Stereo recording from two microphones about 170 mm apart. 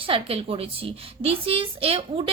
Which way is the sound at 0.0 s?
35° right (ahead or behind).